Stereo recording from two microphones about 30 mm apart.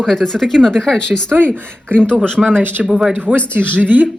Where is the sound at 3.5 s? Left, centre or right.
Right.